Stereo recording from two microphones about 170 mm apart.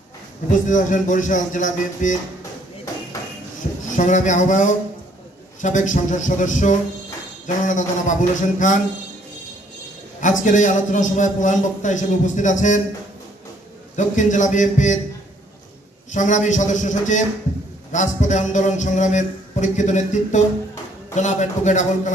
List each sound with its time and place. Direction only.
0.5 s a man's voice: 50° left (ahead or behind)
3.9 s a man's voice: 45° left (ahead or behind)
10.2 s a man's voice: 50° left (ahead or behind)
13.9 s a man's voice: 45° left (ahead or behind)
16.1 s a man's voice: 45° left (ahead or behind)